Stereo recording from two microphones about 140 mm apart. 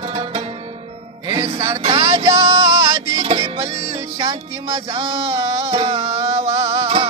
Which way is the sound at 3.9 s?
45° right (ahead or behind).